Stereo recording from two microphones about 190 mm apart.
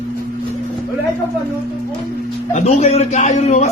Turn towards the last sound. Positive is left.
turn(degrees=35)  # may be behind; listen again after turning